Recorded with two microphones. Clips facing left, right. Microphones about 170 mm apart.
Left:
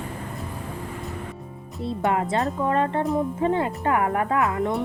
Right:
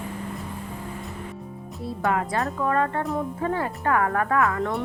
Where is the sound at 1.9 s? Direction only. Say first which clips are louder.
Left 2 dB; 25° left (ahead or behind).